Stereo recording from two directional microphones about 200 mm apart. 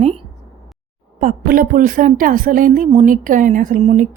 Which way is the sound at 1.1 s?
45° right (ahead or behind).